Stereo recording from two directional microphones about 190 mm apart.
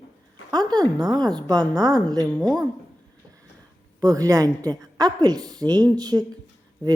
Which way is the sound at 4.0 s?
20° right (ahead or behind).